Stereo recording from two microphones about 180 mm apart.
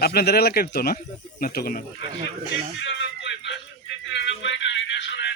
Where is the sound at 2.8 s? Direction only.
80° left.